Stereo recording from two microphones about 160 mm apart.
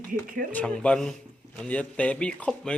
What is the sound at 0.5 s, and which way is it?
Speech, 5° left (ahead or behind).